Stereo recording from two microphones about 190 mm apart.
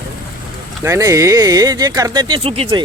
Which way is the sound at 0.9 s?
15° right (ahead or behind).